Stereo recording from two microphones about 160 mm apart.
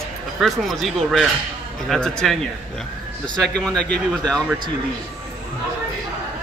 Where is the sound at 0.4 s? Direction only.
Centre (ahead or behind).